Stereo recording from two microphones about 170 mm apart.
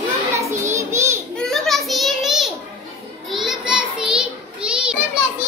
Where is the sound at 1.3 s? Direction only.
Centre (ahead or behind).